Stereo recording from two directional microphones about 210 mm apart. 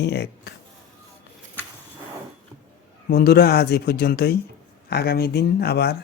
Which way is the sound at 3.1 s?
45° left (ahead or behind).